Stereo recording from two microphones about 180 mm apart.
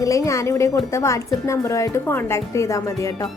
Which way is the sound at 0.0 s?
15° left (ahead or behind).